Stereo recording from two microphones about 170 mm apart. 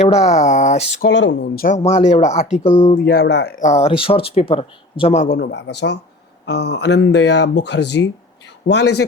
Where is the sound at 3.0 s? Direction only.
65° left (ahead or behind).